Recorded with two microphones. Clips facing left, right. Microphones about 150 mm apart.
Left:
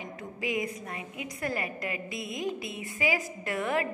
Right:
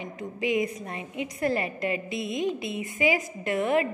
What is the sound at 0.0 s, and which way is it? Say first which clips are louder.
A woman's voice: right 5 dB; 20° right (ahead or behind).